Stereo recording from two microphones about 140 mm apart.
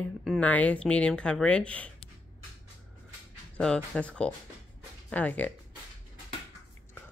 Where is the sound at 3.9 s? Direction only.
10° left (ahead or behind).